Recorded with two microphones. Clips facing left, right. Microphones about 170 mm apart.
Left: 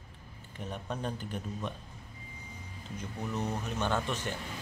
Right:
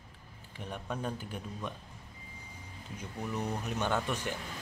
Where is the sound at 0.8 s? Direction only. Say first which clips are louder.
Even; 5° right (ahead or behind).